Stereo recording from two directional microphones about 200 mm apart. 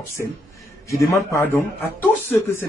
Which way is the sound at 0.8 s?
15° left (ahead or behind).